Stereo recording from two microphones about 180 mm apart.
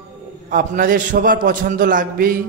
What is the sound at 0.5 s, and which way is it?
A man's voice, 50° right (ahead or behind).